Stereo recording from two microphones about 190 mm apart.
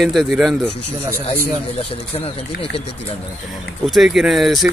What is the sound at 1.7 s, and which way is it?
Speech, 30° left (ahead or behind).